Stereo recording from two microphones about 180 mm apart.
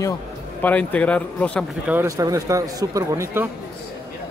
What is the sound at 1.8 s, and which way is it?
Speech, 10° right (ahead or behind).